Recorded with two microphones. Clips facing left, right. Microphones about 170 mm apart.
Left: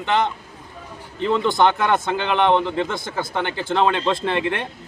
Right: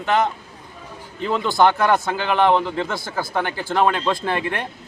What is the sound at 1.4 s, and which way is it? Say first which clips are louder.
Speech: right 3 dB; 20° left (ahead or behind).